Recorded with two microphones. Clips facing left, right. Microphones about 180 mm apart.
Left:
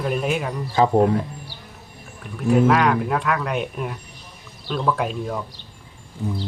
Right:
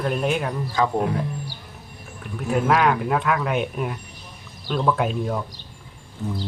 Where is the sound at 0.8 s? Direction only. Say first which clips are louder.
Left 4 dB; 25° left (ahead or behind).